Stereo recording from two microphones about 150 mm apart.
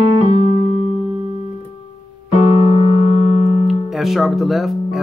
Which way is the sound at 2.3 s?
40° left (ahead or behind).